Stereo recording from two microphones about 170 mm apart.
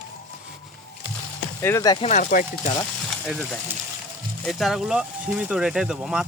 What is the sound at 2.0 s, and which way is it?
Speech, 45° left (ahead or behind).